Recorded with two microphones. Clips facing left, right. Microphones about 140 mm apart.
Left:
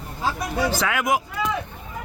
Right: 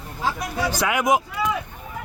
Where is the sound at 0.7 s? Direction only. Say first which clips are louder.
Right 2 dB; 15° right (ahead or behind).